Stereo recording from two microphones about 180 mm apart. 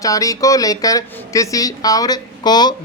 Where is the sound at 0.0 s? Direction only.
20° left (ahead or behind).